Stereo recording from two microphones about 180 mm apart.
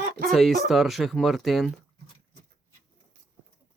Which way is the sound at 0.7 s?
Centre (ahead or behind).